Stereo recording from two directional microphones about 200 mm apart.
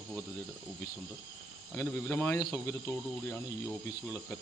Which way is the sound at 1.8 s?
10° left (ahead or behind).